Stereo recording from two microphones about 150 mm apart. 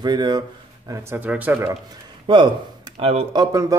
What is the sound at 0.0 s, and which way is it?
A man's voice, 30° right (ahead or behind).